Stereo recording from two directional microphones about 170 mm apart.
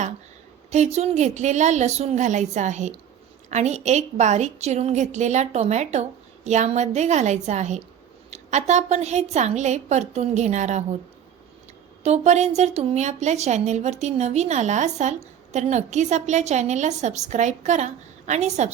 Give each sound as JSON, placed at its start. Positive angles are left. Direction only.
{"t": 0.7, "sound": "a woman's voice", "side_deg": -40}
{"t": 12.0, "sound": "a woman's voice", "side_deg": -40}